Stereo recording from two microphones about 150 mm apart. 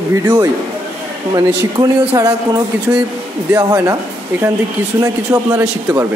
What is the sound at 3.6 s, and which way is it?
Speech, 25° right (ahead or behind).